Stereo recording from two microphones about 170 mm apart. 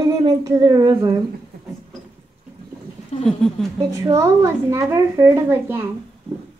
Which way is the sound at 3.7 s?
20° right (ahead or behind).